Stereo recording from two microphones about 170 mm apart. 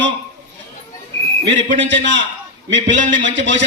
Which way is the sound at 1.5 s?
90° right.